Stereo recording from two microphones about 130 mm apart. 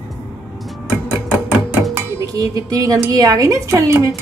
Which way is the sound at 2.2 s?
30° right (ahead or behind).